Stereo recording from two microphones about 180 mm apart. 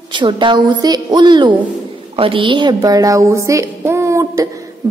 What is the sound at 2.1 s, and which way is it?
A woman's voice, 30° right (ahead or behind).